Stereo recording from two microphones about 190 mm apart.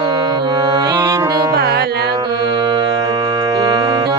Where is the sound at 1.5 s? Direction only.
55° right (ahead or behind).